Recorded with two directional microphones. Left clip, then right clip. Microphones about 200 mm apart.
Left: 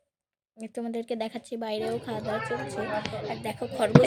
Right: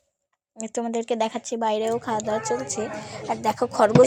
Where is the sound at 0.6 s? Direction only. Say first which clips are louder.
Right 7 dB; 10° right (ahead or behind).